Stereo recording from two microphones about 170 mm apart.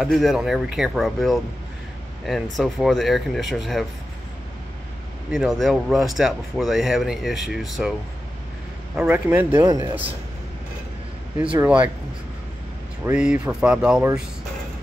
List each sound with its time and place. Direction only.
0.0 s speech: centre (ahead or behind)
2.5 s speech: centre (ahead or behind)
5.3 s speech: centre (ahead or behind)
8.9 s speech: 10° right (ahead or behind)
11.6 s speech: 10° right (ahead or behind)
13.0 s speech: 5° right (ahead or behind)